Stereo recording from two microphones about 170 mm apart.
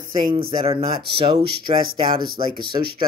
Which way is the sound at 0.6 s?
35° right (ahead or behind).